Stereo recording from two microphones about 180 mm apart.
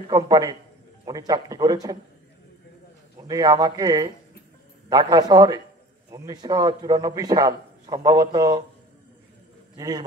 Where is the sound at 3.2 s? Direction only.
20° right (ahead or behind).